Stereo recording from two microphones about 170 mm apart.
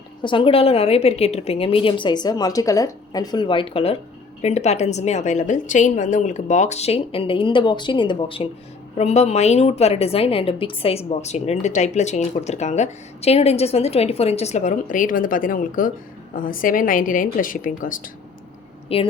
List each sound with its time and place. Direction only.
0.2 s a woman's voice: 30° left (ahead or behind)
9.0 s a woman's voice: 40° left (ahead or behind)
18.9 s a woman's voice: 35° left (ahead or behind)